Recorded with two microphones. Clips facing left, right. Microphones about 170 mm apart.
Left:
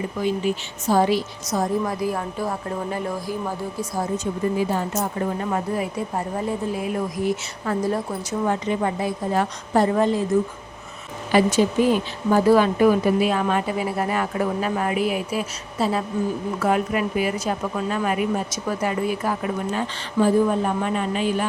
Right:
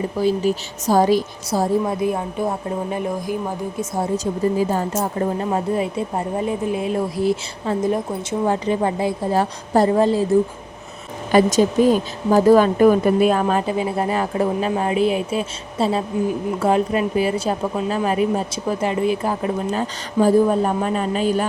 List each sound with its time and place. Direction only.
0.2 s a woman's voice: 35° right (ahead or behind)
4.2 s speech: 40° right (ahead or behind)
4.9 s a woman's voice: 30° right (ahead or behind)
8.4 s a woman's voice: 35° right (ahead or behind)
11.5 s speech: 40° right (ahead or behind)
13.4 s a woman's voice: 30° right (ahead or behind)
19.7 s a woman's voice: 35° right (ahead or behind)